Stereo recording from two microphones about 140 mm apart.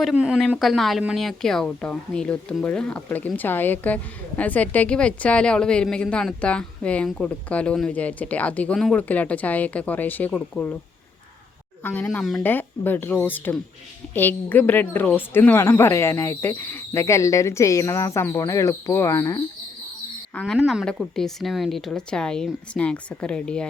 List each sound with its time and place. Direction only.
0.0 s a woman's voice: 5° right (ahead or behind); by 10.8 s 10° left (ahead or behind)
11.8 s a woman's voice: 10° left (ahead or behind)
20.3 s a woman's voice: 5° left (ahead or behind)